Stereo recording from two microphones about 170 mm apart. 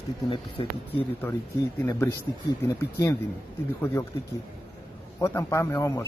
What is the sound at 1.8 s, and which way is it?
Speech, 15° left (ahead or behind).